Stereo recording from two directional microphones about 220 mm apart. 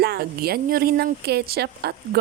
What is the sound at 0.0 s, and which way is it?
Speech, 45° right (ahead or behind).